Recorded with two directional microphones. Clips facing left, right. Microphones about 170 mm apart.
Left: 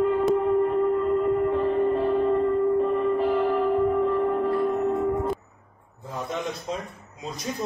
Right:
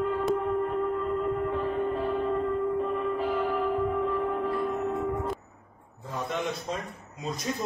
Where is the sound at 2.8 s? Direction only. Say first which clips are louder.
Left 6 dB; centre (ahead or behind).